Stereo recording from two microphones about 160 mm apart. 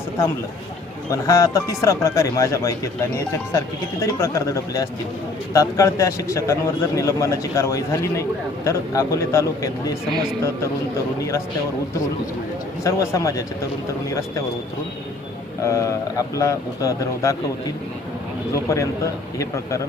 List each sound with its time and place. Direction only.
1.1 s a man's voice: 20° left (ahead or behind)
4.0 s a man's voice: 20° left (ahead or behind)
12.8 s a man's voice: 20° left (ahead or behind)
15.6 s a man's voice: 20° left (ahead or behind)
18.5 s a man's voice: 20° left (ahead or behind)